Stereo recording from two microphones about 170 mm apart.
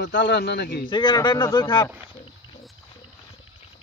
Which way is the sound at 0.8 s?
25° left (ahead or behind).